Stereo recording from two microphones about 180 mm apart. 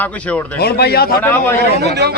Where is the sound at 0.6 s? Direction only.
60° left (ahead or behind).